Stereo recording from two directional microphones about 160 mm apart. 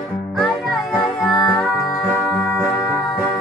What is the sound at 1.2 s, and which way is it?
Music, 25° left (ahead or behind).